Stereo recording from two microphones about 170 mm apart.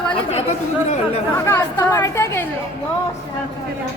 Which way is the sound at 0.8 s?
40° left (ahead or behind).